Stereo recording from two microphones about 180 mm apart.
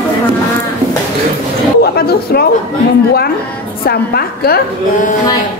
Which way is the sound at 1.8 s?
60° left (ahead or behind).